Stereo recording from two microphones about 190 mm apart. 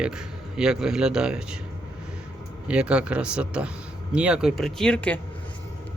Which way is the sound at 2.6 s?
5° right (ahead or behind).